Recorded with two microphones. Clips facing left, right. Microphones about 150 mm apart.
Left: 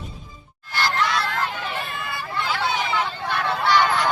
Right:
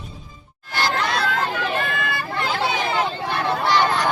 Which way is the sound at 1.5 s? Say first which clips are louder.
Right 6 dB; 75° right (ahead or behind).